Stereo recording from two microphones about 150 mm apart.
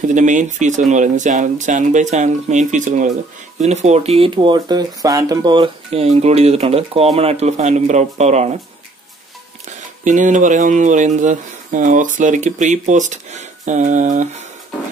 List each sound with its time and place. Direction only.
0.1 s speech: 55° right (ahead or behind)
10.0 s speech: 55° right (ahead or behind)